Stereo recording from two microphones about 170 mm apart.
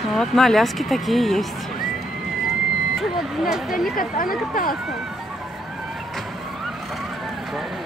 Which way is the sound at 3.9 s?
55° left (ahead or behind).